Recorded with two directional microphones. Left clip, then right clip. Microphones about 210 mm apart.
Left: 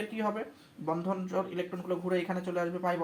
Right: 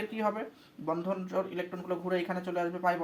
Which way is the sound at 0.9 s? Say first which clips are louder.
Even; 10° left (ahead or behind).